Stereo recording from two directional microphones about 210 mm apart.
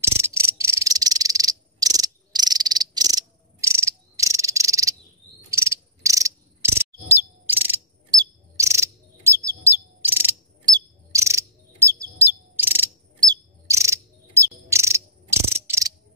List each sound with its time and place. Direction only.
0.0 s cricket: 10° right (ahead or behind)
7.2 s bird: 10° right (ahead or behind)
12.5 s cricket: 10° right (ahead or behind)